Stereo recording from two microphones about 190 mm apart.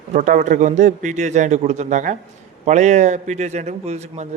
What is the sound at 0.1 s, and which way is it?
A man's voice, 40° right (ahead or behind).